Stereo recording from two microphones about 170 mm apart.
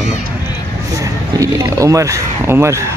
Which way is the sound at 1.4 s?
20° right (ahead or behind).